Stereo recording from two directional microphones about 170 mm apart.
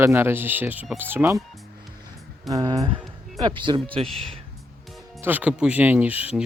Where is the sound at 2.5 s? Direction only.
20° right (ahead or behind).